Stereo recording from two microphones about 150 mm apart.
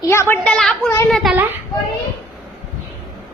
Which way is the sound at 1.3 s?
15° right (ahead or behind).